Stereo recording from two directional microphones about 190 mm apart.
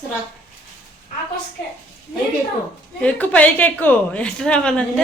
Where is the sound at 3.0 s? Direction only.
5° left (ahead or behind).